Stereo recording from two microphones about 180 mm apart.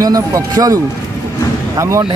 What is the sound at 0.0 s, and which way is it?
Speech, 20° right (ahead or behind).